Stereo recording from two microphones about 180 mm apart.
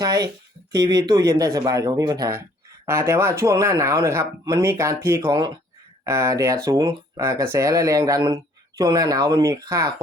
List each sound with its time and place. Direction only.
0.0 s speech: 20° right (ahead or behind)